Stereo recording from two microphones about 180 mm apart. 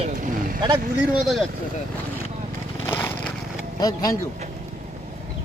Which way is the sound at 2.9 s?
10° left (ahead or behind).